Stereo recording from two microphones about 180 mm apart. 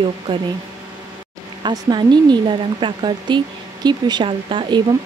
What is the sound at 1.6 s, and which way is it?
Speech, 25° right (ahead or behind).